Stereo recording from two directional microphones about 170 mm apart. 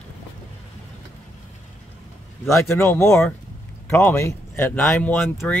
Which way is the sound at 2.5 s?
15° left (ahead or behind).